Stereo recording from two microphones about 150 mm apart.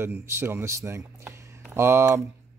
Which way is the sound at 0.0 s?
15° right (ahead or behind).